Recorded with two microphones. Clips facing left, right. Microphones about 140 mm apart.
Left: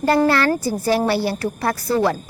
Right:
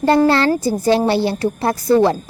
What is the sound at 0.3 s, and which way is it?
A woman's voice, 25° right (ahead or behind).